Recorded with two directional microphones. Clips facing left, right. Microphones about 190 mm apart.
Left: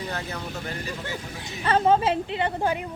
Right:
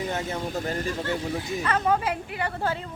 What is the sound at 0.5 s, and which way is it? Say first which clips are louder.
Speech: right 5 dB; 40° right (ahead or behind).